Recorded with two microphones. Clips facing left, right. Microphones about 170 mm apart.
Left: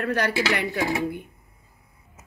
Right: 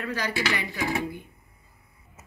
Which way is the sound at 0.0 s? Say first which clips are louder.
Left 5 dB; 60° left (ahead or behind).